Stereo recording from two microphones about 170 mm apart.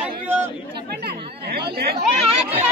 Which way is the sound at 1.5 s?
70° right (ahead or behind).